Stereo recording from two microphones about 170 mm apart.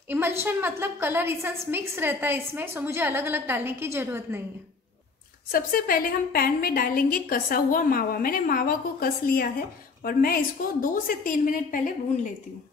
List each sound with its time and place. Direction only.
0.1 s a woman's voice: 15° right (ahead or behind)
5.5 s a woman's voice: 55° left (ahead or behind)